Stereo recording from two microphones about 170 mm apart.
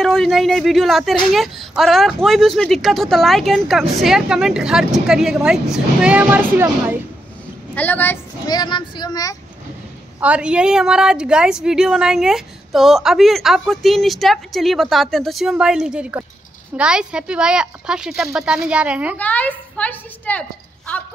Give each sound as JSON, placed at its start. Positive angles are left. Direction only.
{"t": 0.0, "sound": "a woman's voice", "side_deg": 0}
{"t": 7.7, "sound": "a woman's voice", "side_deg": 10}
{"t": 8.5, "sound": "speech", "side_deg": 25}
{"t": 10.2, "sound": "a woman's voice", "side_deg": -5}
{"t": 19.1, "sound": "a woman's voice", "side_deg": 10}